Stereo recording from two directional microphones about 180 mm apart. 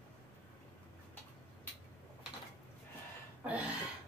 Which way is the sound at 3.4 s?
10° right (ahead or behind).